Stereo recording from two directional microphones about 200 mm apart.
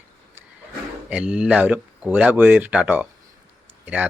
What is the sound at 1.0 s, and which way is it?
Speech, 5° right (ahead or behind).